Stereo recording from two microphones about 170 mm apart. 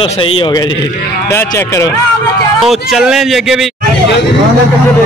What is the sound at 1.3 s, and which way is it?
Speech, 15° left (ahead or behind).